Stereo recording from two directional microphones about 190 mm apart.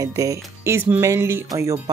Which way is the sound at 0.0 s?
15° right (ahead or behind).